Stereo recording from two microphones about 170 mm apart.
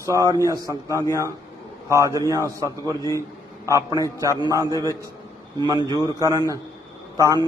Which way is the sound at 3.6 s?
20° right (ahead or behind).